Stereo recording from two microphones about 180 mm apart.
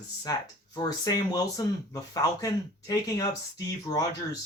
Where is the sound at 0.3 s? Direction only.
20° left (ahead or behind).